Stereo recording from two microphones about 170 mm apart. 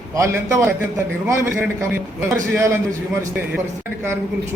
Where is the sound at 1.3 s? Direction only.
10° right (ahead or behind).